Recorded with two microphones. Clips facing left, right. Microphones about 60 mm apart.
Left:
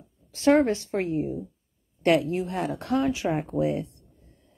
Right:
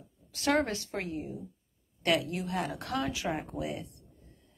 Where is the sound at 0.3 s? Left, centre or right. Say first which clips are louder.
Left 8 dB; left.